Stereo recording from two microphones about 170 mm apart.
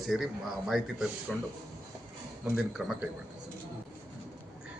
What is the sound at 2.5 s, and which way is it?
Speech, 5° right (ahead or behind).